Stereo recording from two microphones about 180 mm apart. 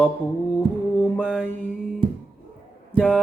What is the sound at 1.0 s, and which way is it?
Mantra, 10° left (ahead or behind).